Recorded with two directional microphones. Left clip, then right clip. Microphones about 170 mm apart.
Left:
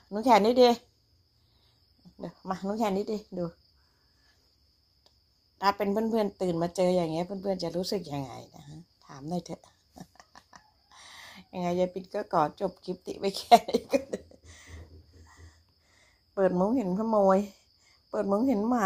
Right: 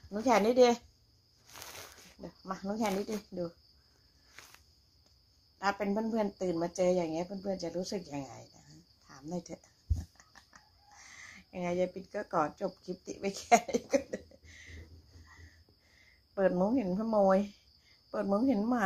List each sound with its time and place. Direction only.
0.1 s speech: 45° left (ahead or behind)
2.2 s speech: 60° left (ahead or behind)
5.6 s speech: 55° left (ahead or behind)
10.1 s a sound: 50° left (ahead or behind)
16.3 s speech: 45° left (ahead or behind)